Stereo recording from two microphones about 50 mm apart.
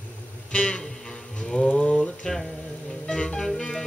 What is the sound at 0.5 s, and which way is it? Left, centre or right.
Music, centre.